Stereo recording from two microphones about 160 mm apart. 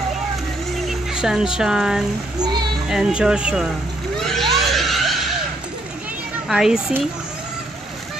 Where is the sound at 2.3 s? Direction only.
25° right (ahead or behind).